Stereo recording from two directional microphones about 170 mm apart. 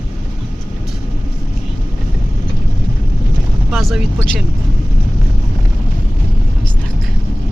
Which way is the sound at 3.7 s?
Centre (ahead or behind).